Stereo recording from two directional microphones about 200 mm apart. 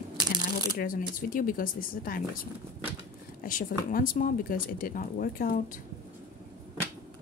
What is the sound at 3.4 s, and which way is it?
A woman's voice, 45° left (ahead or behind).